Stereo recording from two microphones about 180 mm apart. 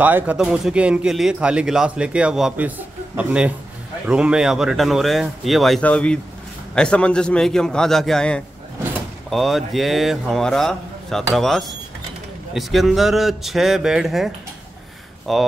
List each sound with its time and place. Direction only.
0.0 s speech: 10° right (ahead or behind)